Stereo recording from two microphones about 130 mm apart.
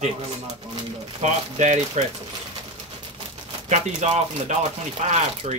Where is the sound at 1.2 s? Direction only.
65° right (ahead or behind).